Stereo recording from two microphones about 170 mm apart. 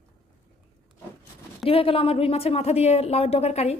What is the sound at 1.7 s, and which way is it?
A woman's voice, 35° left (ahead or behind).